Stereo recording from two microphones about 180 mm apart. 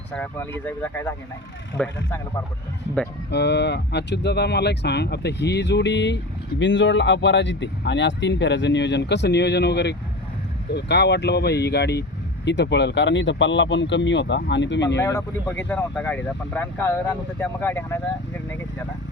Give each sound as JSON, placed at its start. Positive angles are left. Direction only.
{"t": 0.1, "sound": "speech", "side_deg": 10}
{"t": 3.3, "sound": "speech", "side_deg": 70}
{"t": 15.0, "sound": "speech", "side_deg": 15}